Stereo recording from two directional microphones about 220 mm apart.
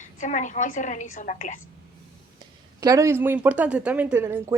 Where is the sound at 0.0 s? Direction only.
35° left (ahead or behind).